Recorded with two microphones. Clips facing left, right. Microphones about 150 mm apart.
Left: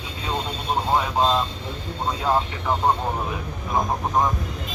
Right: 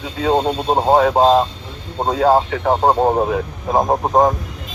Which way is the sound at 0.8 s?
50° right (ahead or behind).